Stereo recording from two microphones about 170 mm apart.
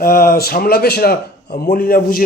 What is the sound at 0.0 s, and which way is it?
A man's voice, 55° left (ahead or behind).